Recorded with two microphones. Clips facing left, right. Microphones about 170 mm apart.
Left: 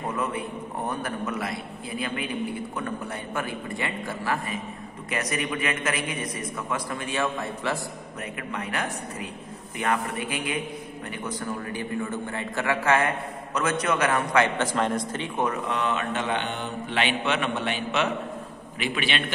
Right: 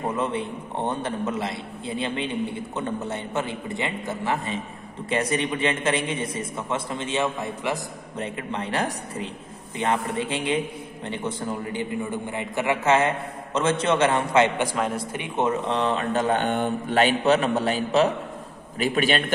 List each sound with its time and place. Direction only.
0.0 s a man's voice: 25° right (ahead or behind)
14.7 s a man's voice: 5° right (ahead or behind)
15.2 s speech: 25° right (ahead or behind); by 19.3 s 40° right (ahead or behind)